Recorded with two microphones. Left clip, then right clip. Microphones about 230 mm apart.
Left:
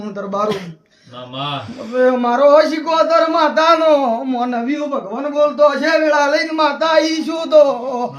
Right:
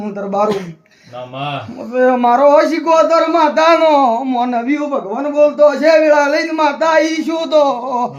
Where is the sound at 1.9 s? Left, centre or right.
Left.